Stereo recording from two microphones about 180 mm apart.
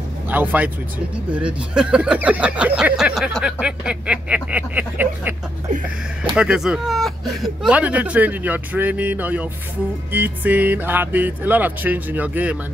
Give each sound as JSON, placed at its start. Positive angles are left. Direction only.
{"t": 0.3, "sound": "speech", "side_deg": -10}
{"t": 6.3, "sound": "speech", "side_deg": -5}